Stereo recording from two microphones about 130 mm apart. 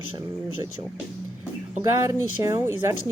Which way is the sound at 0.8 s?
35° right (ahead or behind).